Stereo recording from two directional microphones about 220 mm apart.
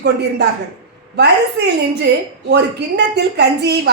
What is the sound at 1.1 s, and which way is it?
A woman's voice, 50° right (ahead or behind).